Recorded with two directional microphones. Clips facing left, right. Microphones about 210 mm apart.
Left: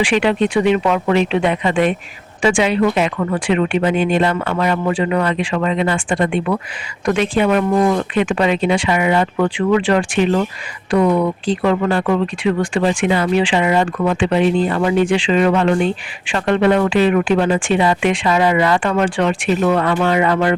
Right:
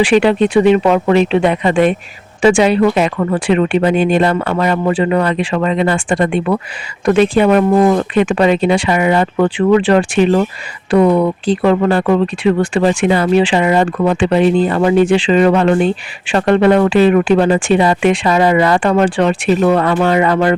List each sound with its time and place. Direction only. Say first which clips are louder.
0.0 s speech: right 5 dB; 35° right (ahead or behind)
11.6 s speech: right 4 dB; 35° right (ahead or behind)